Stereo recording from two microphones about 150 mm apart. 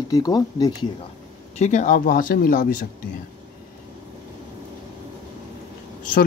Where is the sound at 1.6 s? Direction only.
55° left (ahead or behind).